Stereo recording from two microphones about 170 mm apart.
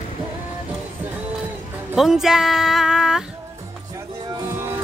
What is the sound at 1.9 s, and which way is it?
Speech, 5° right (ahead or behind).